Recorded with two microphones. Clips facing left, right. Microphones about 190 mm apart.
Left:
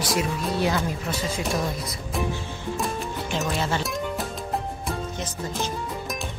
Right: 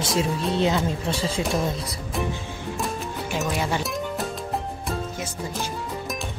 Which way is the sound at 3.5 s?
15° right (ahead or behind).